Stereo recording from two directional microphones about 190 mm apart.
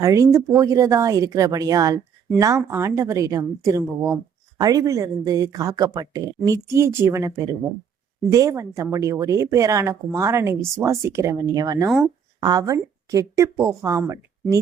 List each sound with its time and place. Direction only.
0.0 s speech: 15° right (ahead or behind)
11.9 s speech: centre (ahead or behind)
12.5 s speech: 20° right (ahead or behind)